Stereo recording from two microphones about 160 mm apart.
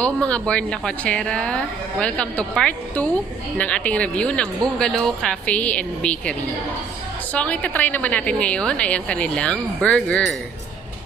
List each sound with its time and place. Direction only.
0.0 s a woman's voice: 5° left (ahead or behind)
7.3 s a woman's voice: 10° left (ahead or behind)